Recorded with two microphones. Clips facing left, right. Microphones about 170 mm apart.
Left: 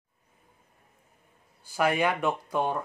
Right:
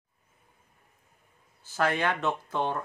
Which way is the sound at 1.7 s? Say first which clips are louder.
Left 2 dB; 10° left (ahead or behind).